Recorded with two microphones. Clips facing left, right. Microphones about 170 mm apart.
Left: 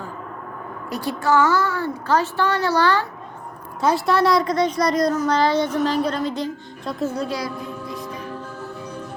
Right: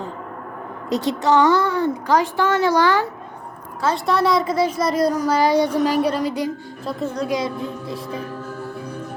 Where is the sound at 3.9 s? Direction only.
Centre (ahead or behind).